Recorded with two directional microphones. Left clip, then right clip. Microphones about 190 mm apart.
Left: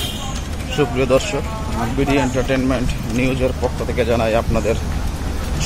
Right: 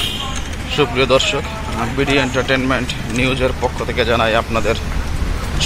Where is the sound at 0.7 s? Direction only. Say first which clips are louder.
Right 3 dB; centre (ahead or behind).